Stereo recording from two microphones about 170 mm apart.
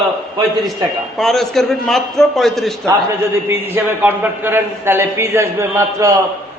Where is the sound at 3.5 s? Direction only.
15° right (ahead or behind).